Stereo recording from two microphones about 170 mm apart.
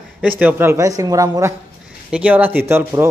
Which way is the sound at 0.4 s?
10° right (ahead or behind).